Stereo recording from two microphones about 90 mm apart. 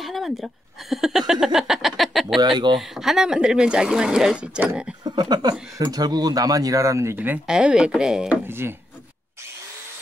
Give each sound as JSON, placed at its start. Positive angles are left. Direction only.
{"t": 0.0, "sound": "speech", "side_deg": 0}
{"t": 2.4, "sound": "speech", "side_deg": -55}
{"t": 2.8, "sound": "speech", "side_deg": -5}
{"t": 5.0, "sound": "speech", "side_deg": -55}
{"t": 7.4, "sound": "speech", "side_deg": -10}
{"t": 8.3, "sound": "speech", "side_deg": -25}